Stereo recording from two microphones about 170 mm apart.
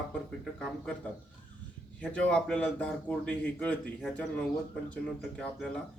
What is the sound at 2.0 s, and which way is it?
A man's voice, 5° left (ahead or behind).